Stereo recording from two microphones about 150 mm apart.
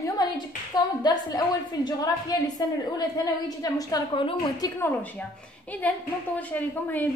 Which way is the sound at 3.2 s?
25° left (ahead or behind).